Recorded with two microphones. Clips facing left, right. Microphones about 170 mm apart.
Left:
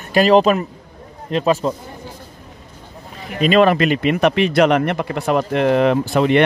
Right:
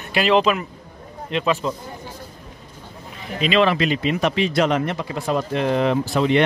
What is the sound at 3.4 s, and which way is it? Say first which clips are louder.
Speech: left 5 dB; 45° left (ahead or behind).